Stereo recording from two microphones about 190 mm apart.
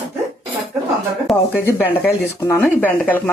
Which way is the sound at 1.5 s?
10° left (ahead or behind).